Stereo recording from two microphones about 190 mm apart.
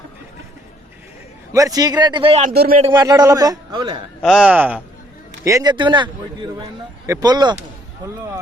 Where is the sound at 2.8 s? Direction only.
20° right (ahead or behind).